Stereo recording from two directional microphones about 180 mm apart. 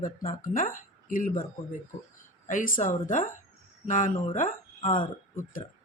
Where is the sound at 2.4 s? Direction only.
45° left (ahead or behind).